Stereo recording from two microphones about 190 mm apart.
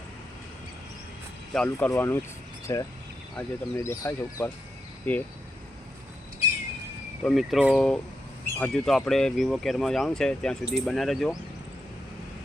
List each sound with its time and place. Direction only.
1.5 s speech: 5° left (ahead or behind)
7.3 s speech: centre (ahead or behind)